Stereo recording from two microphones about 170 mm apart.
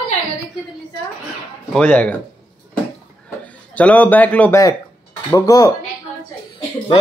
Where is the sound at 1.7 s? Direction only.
10° left (ahead or behind).